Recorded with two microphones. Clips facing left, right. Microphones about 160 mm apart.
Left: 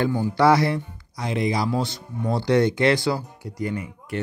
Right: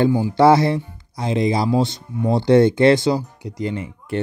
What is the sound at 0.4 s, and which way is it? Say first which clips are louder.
Speech: right 4 dB; 25° right (ahead or behind).